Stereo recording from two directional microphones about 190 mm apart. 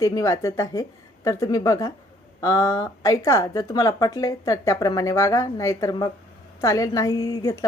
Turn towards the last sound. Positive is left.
turn(degrees=15)  # may be behind; listen again after turning